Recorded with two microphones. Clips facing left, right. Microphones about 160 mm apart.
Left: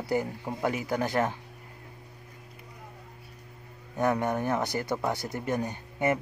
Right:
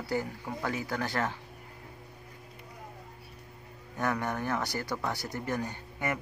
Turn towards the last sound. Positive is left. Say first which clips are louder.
# left 7 dB
turn(degrees=20)  # may be behind; listen again after turning